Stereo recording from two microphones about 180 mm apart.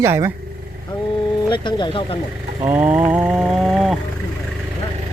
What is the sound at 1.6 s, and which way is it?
Speech, 25° left (ahead or behind).